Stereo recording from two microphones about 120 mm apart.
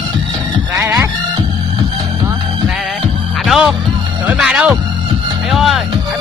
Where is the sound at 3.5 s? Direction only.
Centre (ahead or behind).